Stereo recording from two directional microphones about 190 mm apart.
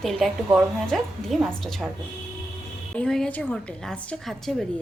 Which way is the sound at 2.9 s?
5° left (ahead or behind).